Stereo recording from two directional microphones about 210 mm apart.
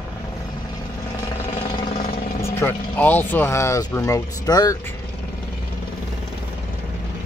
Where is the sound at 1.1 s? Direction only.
15° left (ahead or behind).